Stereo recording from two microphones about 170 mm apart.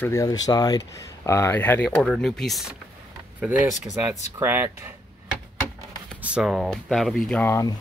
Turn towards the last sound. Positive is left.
turn(degrees=15)  # may be behind; listen again after turning